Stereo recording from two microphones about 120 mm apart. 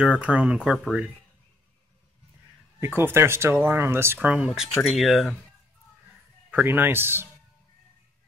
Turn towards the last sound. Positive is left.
turn(degrees=-20)  # may be behind; listen again after turning